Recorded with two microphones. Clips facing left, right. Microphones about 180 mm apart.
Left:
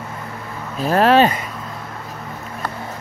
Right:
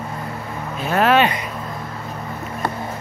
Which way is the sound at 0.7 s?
35° left (ahead or behind).